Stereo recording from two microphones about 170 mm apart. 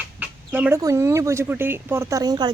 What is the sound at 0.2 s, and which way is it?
Speech, 10° right (ahead or behind).